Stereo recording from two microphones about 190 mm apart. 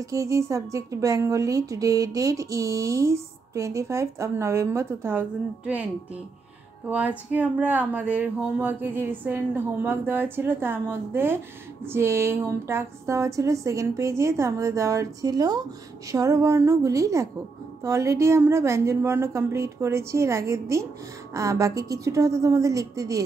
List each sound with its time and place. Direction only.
0.0 s speech: 15° right (ahead or behind)
6.9 s speech: 10° right (ahead or behind)